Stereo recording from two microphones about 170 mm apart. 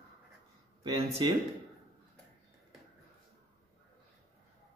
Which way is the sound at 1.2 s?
30° right (ahead or behind).